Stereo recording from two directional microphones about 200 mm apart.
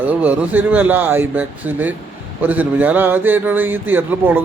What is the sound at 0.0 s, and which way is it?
A man's voice, 10° right (ahead or behind).